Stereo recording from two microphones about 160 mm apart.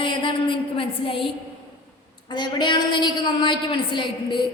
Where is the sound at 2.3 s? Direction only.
30° left (ahead or behind).